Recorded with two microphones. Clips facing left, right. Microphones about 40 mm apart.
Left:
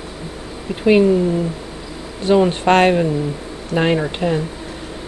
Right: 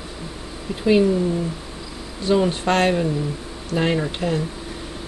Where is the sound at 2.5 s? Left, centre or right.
Left.